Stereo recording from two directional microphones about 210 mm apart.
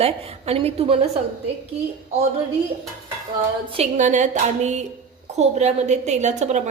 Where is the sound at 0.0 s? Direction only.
30° right (ahead or behind).